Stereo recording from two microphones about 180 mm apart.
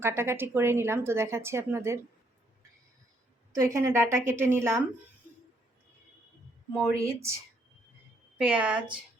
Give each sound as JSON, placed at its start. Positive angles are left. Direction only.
{"t": 0.0, "sound": "speech", "side_deg": -15}
{"t": 3.5, "sound": "speech", "side_deg": -15}
{"t": 6.9, "sound": "speech", "side_deg": -15}
{"t": 8.4, "sound": "speech", "side_deg": -5}